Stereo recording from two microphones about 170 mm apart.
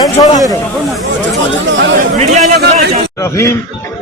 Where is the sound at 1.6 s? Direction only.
90° right.